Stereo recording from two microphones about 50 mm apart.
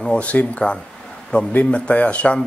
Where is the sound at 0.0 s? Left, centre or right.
Left.